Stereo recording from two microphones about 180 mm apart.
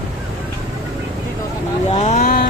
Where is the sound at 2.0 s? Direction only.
40° left (ahead or behind).